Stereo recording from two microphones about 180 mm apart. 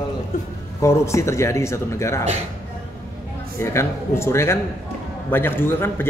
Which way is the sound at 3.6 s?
15° left (ahead or behind).